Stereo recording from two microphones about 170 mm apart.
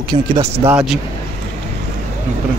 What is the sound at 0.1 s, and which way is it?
Speech, 40° right (ahead or behind).